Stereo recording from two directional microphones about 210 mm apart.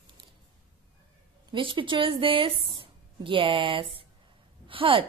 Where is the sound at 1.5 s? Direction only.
25° right (ahead or behind).